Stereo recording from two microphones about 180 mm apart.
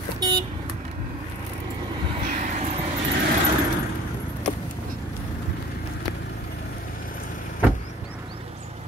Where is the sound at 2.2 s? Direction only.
45° right (ahead or behind).